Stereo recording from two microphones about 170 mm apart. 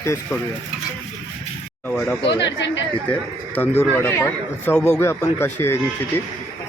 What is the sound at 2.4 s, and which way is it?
Speech, 90° left.